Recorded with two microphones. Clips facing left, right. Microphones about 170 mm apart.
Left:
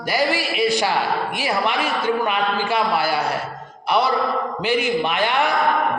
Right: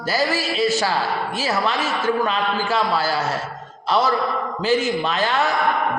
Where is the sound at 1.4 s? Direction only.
15° left (ahead or behind).